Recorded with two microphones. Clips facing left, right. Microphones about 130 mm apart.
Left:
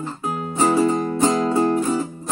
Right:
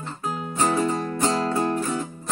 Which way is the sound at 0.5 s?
5° left (ahead or behind).